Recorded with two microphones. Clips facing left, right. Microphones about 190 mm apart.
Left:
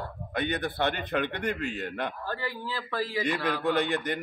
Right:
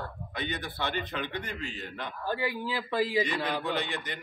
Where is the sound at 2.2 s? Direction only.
15° right (ahead or behind).